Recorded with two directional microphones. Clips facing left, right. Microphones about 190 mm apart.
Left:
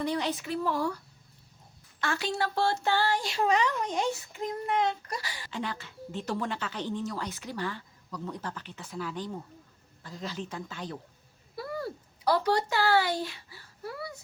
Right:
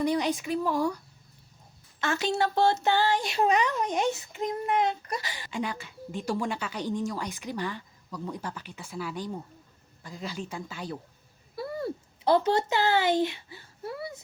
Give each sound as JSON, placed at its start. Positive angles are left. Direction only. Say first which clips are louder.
{"t": 0.0, "sound": "speech", "louder": "right 4 dB", "side_deg": -15}
{"t": 2.0, "sound": "speech", "louder": "right 4 dB", "side_deg": -20}
{"t": 11.5, "sound": "a sound", "louder": "right 3 dB", "side_deg": -25}